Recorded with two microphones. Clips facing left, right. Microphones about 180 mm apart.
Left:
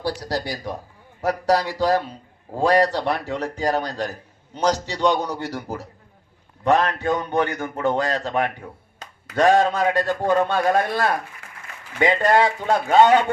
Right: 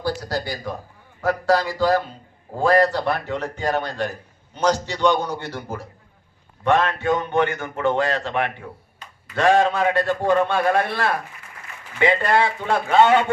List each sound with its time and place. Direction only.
0.0 s a man's voice: 35° left (ahead or behind)
9.9 s a man's voice: 15° left (ahead or behind)
10.4 s a man's voice: 40° left (ahead or behind)
12.2 s a man's voice: 40° left (ahead or behind)